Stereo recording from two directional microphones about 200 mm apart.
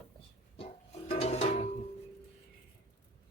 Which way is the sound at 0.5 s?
30° left (ahead or behind).